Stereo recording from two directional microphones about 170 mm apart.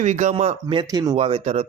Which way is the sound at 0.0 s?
45° right (ahead or behind).